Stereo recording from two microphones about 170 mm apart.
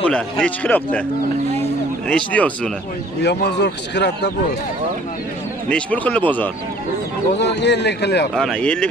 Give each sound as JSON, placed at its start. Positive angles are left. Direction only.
{"t": 0.0, "sound": "a man's voice", "side_deg": 5}
{"t": 2.0, "sound": "a man's voice", "side_deg": 10}
{"t": 3.2, "sound": "speech", "side_deg": 80}
{"t": 5.7, "sound": "a man's voice", "side_deg": 5}
{"t": 7.3, "sound": "speech", "side_deg": 90}
{"t": 8.4, "sound": "speech", "side_deg": 5}